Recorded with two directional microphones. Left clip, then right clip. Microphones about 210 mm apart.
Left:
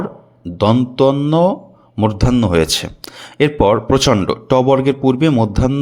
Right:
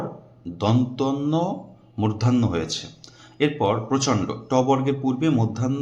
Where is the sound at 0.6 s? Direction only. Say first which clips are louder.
Left 11 dB; 40° left (ahead or behind).